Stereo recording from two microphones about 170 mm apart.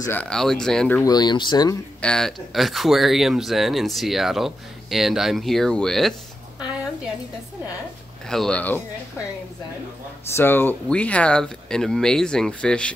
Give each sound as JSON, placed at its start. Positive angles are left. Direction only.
{"t": 0.0, "sound": "speech", "side_deg": 10}
{"t": 1.0, "sound": "speech", "side_deg": 25}
{"t": 2.0, "sound": "speech", "side_deg": 5}
{"t": 8.3, "sound": "speech", "side_deg": 5}
{"t": 10.3, "sound": "speech", "side_deg": 10}